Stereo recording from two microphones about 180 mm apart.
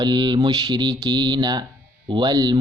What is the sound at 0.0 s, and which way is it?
Speech, 25° right (ahead or behind).